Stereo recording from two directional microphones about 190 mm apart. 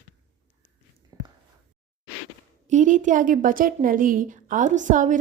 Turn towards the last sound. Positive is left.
turn(degrees=-40)  # may be behind; listen again after turning